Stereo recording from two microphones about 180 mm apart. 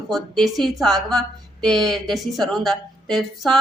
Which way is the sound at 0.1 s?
Centre (ahead or behind).